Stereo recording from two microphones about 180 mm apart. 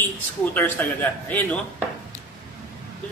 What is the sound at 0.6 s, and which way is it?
Speech, 10° left (ahead or behind).